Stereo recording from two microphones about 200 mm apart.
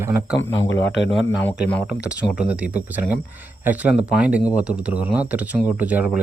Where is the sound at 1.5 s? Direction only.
5° right (ahead or behind).